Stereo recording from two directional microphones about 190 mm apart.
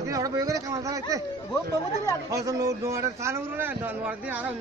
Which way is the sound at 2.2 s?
20° right (ahead or behind).